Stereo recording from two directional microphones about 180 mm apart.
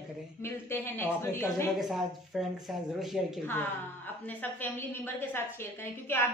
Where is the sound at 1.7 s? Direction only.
Centre (ahead or behind).